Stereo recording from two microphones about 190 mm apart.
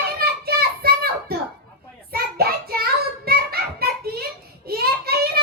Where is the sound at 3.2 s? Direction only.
55° right (ahead or behind).